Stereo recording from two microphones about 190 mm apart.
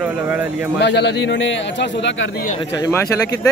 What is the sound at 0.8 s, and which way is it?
A man's voice, 65° left (ahead or behind).